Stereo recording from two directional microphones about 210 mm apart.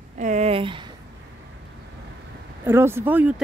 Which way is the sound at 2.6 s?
10° right (ahead or behind).